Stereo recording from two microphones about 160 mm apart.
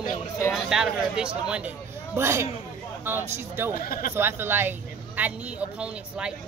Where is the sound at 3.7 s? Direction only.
65° left (ahead or behind).